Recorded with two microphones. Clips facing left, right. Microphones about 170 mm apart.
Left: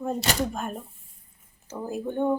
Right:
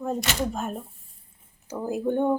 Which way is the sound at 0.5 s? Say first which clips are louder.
Right 2 dB; centre (ahead or behind).